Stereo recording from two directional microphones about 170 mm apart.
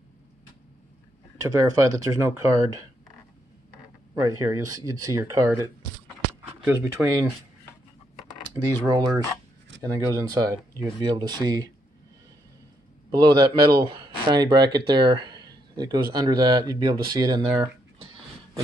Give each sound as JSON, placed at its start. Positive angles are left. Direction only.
{"t": 1.4, "sound": "speech", "side_deg": -20}
{"t": 4.2, "sound": "speech", "side_deg": -20}
{"t": 8.8, "sound": "speech", "side_deg": -20}
{"t": 13.2, "sound": "speech", "side_deg": -30}